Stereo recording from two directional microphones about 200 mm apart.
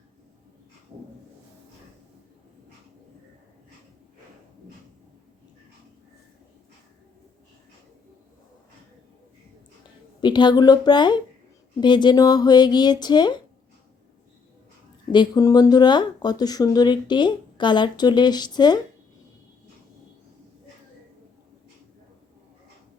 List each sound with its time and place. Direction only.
10.2 s speech: 20° left (ahead or behind)
15.1 s speech: 20° left (ahead or behind)